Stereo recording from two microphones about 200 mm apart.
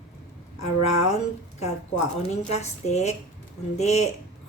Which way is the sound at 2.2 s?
35° left (ahead or behind).